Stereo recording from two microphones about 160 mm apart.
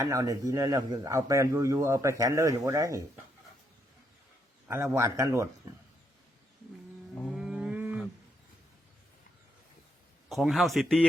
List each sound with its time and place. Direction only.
0.0 s speech: 20° right (ahead or behind)
4.7 s a man's voice: 15° right (ahead or behind)
7.2 s livestock: centre (ahead or behind)
10.2 s a man's voice: centre (ahead or behind)